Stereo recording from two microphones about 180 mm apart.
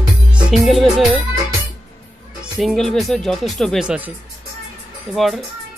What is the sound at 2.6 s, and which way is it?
Speech, centre (ahead or behind).